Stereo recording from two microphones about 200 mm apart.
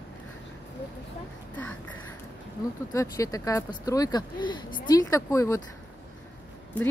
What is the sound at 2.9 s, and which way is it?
Speech, 15° left (ahead or behind).